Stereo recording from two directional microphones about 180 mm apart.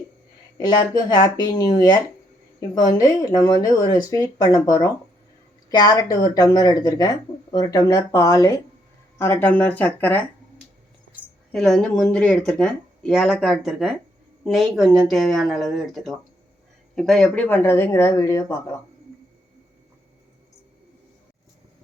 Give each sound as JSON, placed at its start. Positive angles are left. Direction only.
{"t": 0.7, "sound": "speech", "side_deg": 25}
{"t": 3.0, "sound": "speech", "side_deg": 20}
{"t": 11.5, "sound": "speech", "side_deg": 0}